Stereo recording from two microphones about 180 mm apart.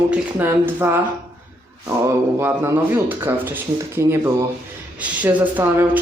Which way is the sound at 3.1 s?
10° right (ahead or behind).